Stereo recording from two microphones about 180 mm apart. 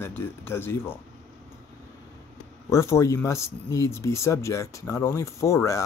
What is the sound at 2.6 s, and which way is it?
Speech, 15° left (ahead or behind).